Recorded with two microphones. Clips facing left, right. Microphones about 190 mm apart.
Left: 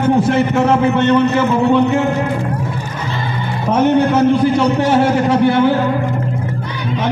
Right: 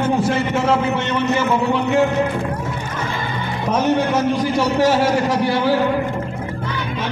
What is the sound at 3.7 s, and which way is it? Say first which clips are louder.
A man's voice: left 5 dB; 60° left (ahead or behind).